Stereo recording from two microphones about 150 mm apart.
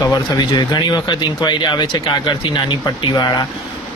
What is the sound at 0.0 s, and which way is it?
Speech, 25° left (ahead or behind).